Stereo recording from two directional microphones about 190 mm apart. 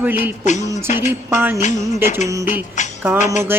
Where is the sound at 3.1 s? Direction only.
40° left (ahead or behind).